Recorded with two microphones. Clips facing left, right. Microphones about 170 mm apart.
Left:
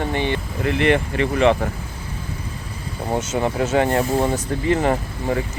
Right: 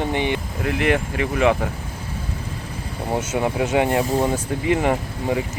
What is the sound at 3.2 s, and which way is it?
Speech, 10° right (ahead or behind).